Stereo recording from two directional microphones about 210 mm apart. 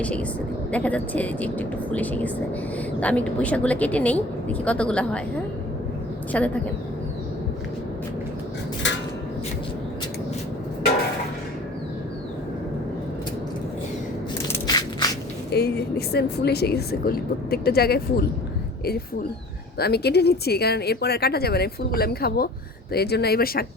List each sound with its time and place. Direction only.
0.0 s a woman's voice: 5° left (ahead or behind)
6.3 s a woman's voice: 5° left (ahead or behind)
14.5 s a sound: 20° left (ahead or behind)
15.4 s speech: 50° left (ahead or behind)
19.8 s speech: 50° left (ahead or behind)